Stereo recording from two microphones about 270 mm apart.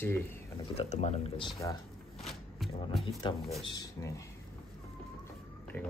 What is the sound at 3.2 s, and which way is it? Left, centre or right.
Speech, centre.